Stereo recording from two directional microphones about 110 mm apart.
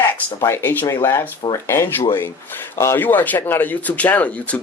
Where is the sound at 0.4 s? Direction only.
20° left (ahead or behind).